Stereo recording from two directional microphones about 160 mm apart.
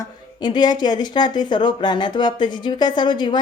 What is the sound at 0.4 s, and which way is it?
Speech, 25° left (ahead or behind).